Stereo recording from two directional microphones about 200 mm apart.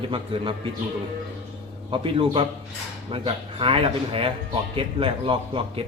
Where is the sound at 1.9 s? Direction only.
25° right (ahead or behind).